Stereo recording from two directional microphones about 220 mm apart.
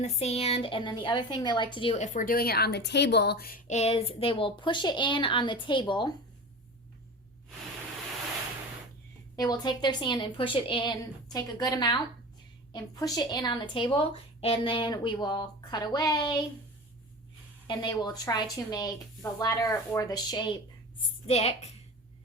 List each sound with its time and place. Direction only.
0.0 s a woman's voice: 30° left (ahead or behind)
9.3 s a woman's voice: 15° left (ahead or behind)
17.7 s a woman's voice: 20° left (ahead or behind)